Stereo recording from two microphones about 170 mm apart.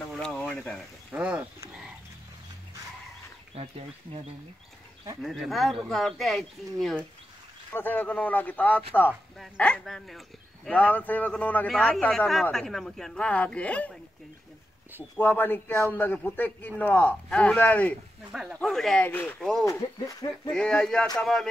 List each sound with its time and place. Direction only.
0.1 s a sound: 5° left (ahead or behind)
1.1 s a sound: 10° right (ahead or behind)
3.5 s speech: 35° right (ahead or behind)
5.2 s speech: centre (ahead or behind)
15.1 s speech: 10° left (ahead or behind)
18.3 s speech: centre (ahead or behind)
19.6 s speech: 20° left (ahead or behind)
20.5 s speech: 5° left (ahead or behind)